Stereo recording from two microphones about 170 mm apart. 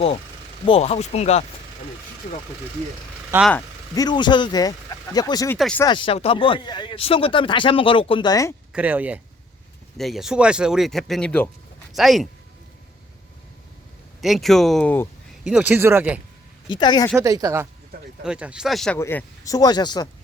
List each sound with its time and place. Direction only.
0.6 s speech: 35° left (ahead or behind)
3.3 s speech: 15° right (ahead or behind)
3.9 s speech: 25° left (ahead or behind)
5.5 s speech: 5° left (ahead or behind)
5.8 s speech: 30° left (ahead or behind)
8.7 s speech: 10° right (ahead or behind)
14.2 s speech: centre (ahead or behind)
15.4 s speech: 10° right (ahead or behind)
16.6 s speech: 25° left (ahead or behind)
17.2 s speech: 20° right (ahead or behind)
18.2 s speech: 5° right (ahead or behind)
18.9 s speech: 15° left (ahead or behind)